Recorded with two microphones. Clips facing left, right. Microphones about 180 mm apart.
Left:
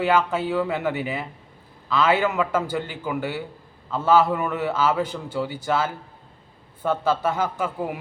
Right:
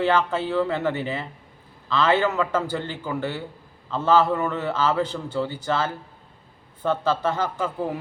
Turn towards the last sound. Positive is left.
turn(degrees=10)  # may be behind; listen again after turning